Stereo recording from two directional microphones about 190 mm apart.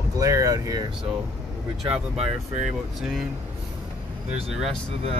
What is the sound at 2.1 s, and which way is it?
Speech, 35° right (ahead or behind).